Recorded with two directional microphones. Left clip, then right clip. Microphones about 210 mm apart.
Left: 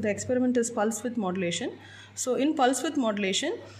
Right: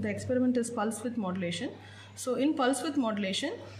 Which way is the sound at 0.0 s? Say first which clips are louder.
Left 3 dB; 40° left (ahead or behind).